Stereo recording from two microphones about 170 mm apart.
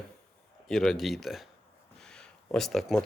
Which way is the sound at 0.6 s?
Centre (ahead or behind).